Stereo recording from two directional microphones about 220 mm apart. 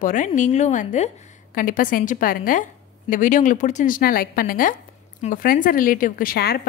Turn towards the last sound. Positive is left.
turn(degrees=45)  # may be behind; listen again after turning